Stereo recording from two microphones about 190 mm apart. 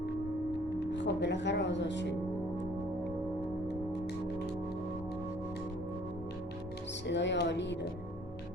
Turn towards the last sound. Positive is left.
turn(degrees=65)  # may be behind; listen again after turning